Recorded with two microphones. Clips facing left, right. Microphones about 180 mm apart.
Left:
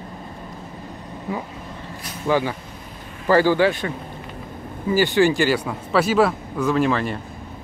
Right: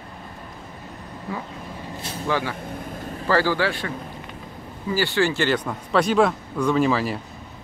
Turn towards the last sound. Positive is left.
turn(degrees=-5)  # may be behind; listen again after turning